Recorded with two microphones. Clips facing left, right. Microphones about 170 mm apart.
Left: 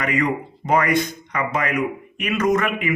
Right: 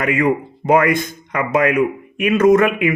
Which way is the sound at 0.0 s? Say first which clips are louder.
Right 5 dB; 55° right (ahead or behind).